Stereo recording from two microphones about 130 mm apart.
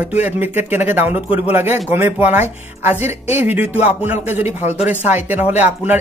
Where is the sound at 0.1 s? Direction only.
15° right (ahead or behind).